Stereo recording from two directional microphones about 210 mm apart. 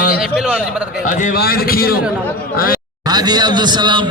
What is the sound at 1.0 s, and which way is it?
A man's voice, 40° left (ahead or behind).